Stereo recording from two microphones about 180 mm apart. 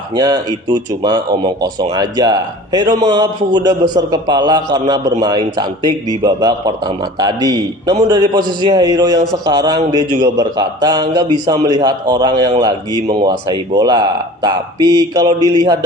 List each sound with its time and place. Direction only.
0.1 s a man's voice: 20° right (ahead or behind)